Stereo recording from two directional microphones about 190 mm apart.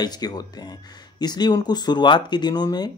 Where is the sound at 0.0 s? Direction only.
20° left (ahead or behind).